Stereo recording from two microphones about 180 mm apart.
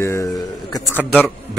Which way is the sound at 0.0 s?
15° left (ahead or behind).